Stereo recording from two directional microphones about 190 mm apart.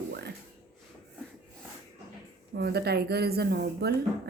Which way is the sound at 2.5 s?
60° right (ahead or behind).